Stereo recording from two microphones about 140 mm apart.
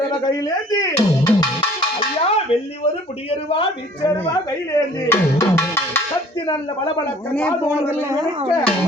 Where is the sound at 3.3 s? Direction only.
40° left (ahead or behind).